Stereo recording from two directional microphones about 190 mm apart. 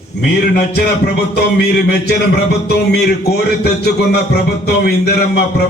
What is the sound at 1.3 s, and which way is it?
A man's voice, 55° left (ahead or behind).